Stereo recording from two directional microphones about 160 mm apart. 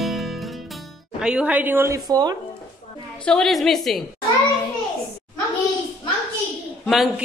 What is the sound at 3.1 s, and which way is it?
Speech, 5° left (ahead or behind).